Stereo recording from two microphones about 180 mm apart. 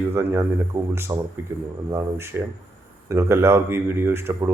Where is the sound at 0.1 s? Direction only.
15° right (ahead or behind).